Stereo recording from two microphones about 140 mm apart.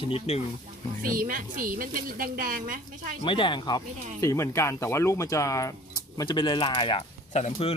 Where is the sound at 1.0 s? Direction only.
90° right.